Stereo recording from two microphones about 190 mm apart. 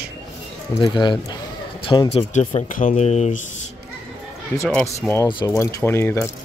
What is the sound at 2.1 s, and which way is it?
Speech, 40° left (ahead or behind).